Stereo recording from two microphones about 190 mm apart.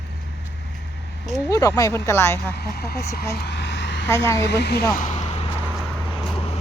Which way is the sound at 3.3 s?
60° left (ahead or behind).